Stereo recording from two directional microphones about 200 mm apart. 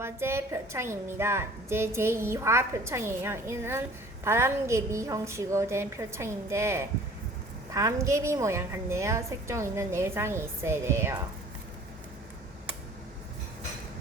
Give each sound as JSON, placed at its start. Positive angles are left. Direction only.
{"t": 0.0, "sound": "a woman's voice", "side_deg": -10}